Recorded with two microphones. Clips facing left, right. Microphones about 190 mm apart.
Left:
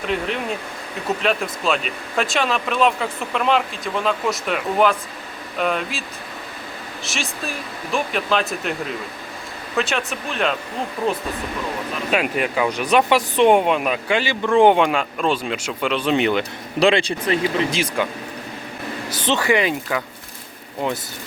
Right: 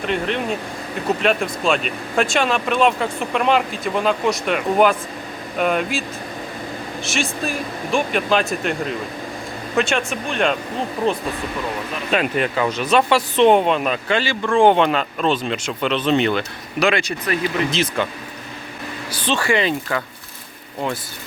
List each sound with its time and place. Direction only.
1.2 s speech: centre (ahead or behind)
9.7 s speech: centre (ahead or behind)
12.1 s speech: 5° left (ahead or behind)
16.8 s speech: 30° left (ahead or behind)
17.7 s speech: 10° left (ahead or behind)
19.2 s speech: 20° left (ahead or behind)